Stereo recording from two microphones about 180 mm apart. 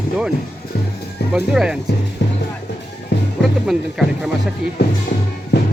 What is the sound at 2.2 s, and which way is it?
Music, 75° left (ahead or behind).